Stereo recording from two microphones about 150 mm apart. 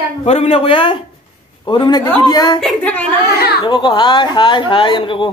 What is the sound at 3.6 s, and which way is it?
A woman's voice, 30° left (ahead or behind).